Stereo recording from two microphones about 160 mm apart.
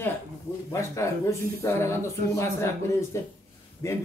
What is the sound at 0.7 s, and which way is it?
Speech, 20° left (ahead or behind).